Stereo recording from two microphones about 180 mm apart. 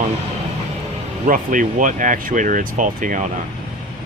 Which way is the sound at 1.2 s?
50° right (ahead or behind).